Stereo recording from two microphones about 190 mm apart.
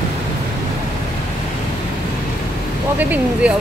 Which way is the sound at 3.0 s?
10° right (ahead or behind).